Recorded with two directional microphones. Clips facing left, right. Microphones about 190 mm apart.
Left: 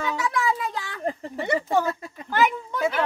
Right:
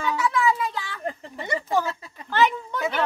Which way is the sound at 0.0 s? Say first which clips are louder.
Right 2 dB; 45° left (ahead or behind).